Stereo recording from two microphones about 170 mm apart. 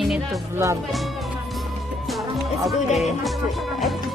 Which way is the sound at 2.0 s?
Centre (ahead or behind).